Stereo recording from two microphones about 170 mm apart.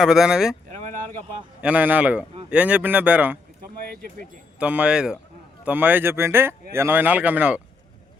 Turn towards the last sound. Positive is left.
turn(degrees=-10)  # may be behind; listen again after turning